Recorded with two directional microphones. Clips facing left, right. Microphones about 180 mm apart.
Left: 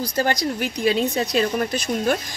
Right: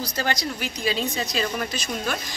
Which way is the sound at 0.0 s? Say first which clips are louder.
Left 5 dB; 50° left (ahead or behind).